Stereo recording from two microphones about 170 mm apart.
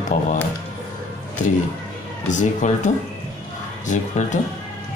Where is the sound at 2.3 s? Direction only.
45° left (ahead or behind).